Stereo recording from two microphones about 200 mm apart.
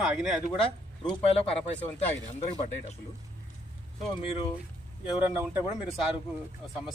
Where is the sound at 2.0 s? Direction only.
35° left (ahead or behind).